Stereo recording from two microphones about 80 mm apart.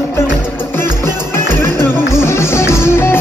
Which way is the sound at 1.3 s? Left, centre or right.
Left.